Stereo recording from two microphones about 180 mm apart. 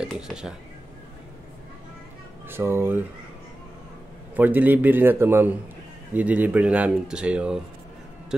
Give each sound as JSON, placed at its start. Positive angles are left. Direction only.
{"t": 0.0, "sound": "speech", "side_deg": -5}
{"t": 2.4, "sound": "speech", "side_deg": -10}
{"t": 4.4, "sound": "speech", "side_deg": -10}